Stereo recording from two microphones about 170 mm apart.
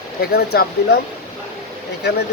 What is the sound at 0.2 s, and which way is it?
Speech, 70° left (ahead or behind).